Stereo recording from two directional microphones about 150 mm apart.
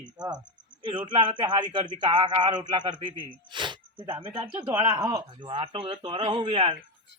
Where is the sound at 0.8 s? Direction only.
30° right (ahead or behind).